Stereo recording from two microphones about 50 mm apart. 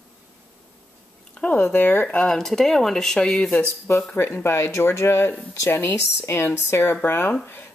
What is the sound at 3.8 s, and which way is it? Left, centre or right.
Speech, left.